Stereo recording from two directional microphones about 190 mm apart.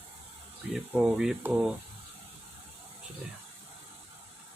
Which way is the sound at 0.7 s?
5° right (ahead or behind).